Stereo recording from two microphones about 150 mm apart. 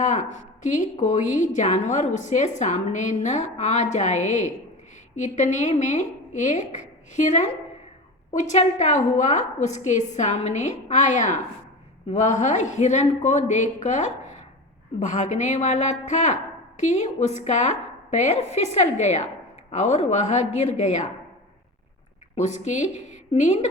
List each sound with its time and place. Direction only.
0.0 s a sound: 55° left (ahead or behind)
0.6 s a woman's voice: 55° left (ahead or behind)
22.4 s a woman's voice: 50° left (ahead or behind)